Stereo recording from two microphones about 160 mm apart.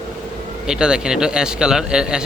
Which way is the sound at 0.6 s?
5° right (ahead or behind).